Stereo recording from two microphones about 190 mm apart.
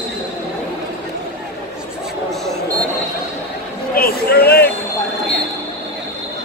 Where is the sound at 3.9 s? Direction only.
55° left (ahead or behind).